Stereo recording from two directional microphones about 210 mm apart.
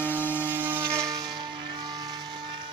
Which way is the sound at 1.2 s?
20° right (ahead or behind).